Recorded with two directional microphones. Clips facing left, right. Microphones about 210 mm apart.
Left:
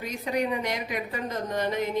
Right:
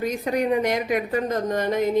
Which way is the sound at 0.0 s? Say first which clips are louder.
Right 5 dB; 50° right (ahead or behind).